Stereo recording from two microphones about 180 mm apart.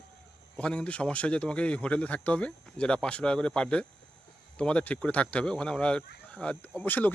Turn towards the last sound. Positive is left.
turn(degrees=10)  # may be behind; listen again after turning